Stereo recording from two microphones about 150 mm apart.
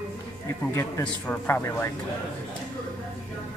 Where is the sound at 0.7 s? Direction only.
15° left (ahead or behind).